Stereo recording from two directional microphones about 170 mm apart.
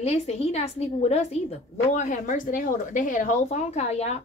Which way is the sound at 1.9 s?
50° left (ahead or behind).